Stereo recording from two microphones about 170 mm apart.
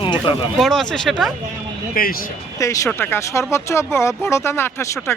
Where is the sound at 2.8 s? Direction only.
10° left (ahead or behind).